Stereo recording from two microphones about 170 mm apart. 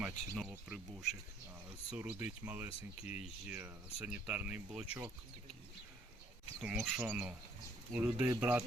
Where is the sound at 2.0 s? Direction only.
10° right (ahead or behind).